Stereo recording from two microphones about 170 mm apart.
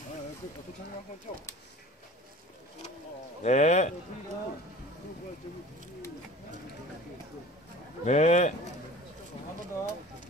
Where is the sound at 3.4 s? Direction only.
45° left (ahead or behind).